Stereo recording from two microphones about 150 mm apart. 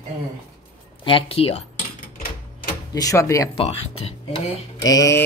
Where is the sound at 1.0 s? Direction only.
35° left (ahead or behind).